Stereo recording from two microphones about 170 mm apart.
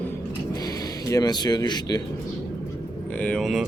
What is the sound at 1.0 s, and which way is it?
Speech, 20° left (ahead or behind).